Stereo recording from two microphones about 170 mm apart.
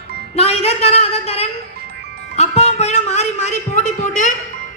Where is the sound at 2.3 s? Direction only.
40° left (ahead or behind).